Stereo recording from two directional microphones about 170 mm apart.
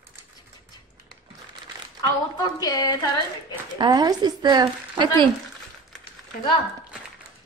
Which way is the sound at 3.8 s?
25° right (ahead or behind).